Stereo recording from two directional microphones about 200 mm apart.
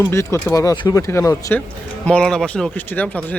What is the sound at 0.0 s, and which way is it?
Speech, 15° left (ahead or behind).